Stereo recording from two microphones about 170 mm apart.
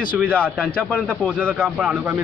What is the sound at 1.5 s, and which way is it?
Speech, 5° right (ahead or behind).